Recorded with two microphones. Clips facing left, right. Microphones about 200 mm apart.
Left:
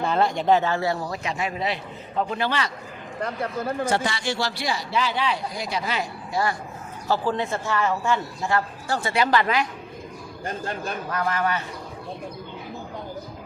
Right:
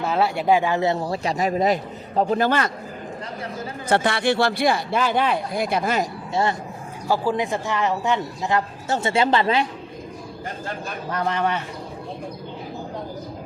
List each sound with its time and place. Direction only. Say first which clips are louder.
0.0 s a man's voice: right 1 dB; 5° right (ahead or behind); by 2.7 s 50° right (ahead or behind)
3.2 s speech: left 7 dB; 55° left (ahead or behind)
3.8 s speech: right 5 dB; 60° right (ahead or behind)
6.3 s a man's voice: right 3 dB; 25° right (ahead or behind)
7.1 s a man's voice: right 2 dB; 15° right (ahead or behind); by 9.6 s 30° right (ahead or behind)